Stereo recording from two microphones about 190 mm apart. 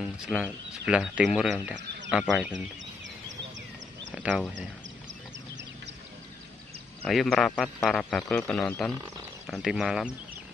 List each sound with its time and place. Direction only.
0.3 s speech: 5° right (ahead or behind)
4.1 s speech: 5° right (ahead or behind)
7.1 s speech: centre (ahead or behind)